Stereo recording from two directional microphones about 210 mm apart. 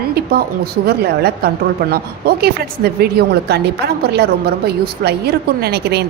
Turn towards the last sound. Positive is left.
turn(degrees=-50)  # may be behind; listen again after turning